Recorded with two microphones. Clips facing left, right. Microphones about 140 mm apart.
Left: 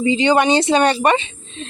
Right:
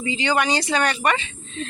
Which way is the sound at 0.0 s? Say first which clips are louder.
Left 7 dB; 20° left (ahead or behind).